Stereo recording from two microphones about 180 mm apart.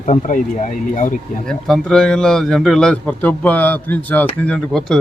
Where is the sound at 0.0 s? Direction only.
45° left (ahead or behind).